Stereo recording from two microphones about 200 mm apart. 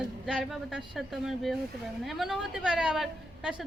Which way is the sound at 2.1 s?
Centre (ahead or behind).